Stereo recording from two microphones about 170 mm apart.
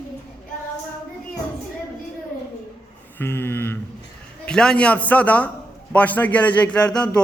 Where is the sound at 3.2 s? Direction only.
10° left (ahead or behind).